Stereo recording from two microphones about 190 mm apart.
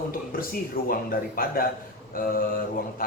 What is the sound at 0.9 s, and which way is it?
Speech, 50° left (ahead or behind).